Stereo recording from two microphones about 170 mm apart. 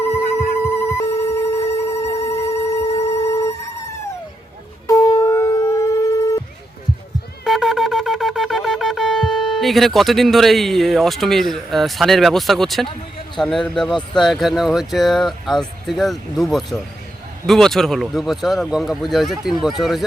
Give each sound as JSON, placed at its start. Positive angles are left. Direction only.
{"t": 0.0, "sound": "telephone bell ringing", "side_deg": 15}
{"t": 4.9, "sound": "shofar", "side_deg": 20}
{"t": 7.4, "sound": "wind instrument", "side_deg": 0}
{"t": 13.4, "sound": "speech", "side_deg": 0}